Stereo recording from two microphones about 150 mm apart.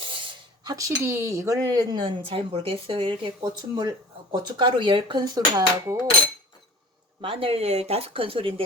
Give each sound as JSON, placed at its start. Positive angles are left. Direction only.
{"t": 0.6, "sound": "speech", "side_deg": -25}
{"t": 7.2, "sound": "speech", "side_deg": -35}